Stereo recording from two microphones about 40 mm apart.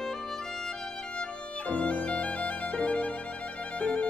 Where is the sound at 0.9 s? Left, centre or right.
Left.